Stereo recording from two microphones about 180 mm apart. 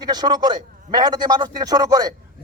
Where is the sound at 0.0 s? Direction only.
20° right (ahead or behind).